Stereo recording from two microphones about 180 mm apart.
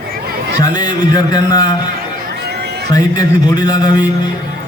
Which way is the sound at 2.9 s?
20° left (ahead or behind).